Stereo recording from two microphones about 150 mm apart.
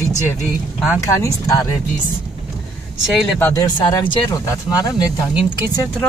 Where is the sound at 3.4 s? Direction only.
15° left (ahead or behind).